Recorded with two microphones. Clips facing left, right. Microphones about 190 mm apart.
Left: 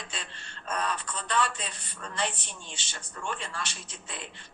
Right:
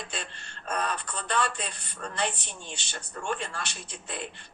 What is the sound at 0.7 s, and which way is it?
Speech, 55° right (ahead or behind).